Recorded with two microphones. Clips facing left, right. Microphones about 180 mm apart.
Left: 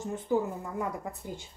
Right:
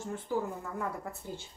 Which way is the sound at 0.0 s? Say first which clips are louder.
Left 4 dB; 15° left (ahead or behind).